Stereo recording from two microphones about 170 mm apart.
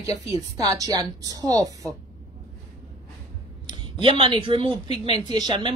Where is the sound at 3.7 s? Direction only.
30° right (ahead or behind).